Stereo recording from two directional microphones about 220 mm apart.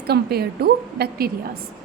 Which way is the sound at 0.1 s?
45° right (ahead or behind).